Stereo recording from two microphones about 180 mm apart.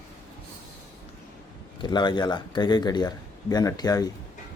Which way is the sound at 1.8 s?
25° left (ahead or behind).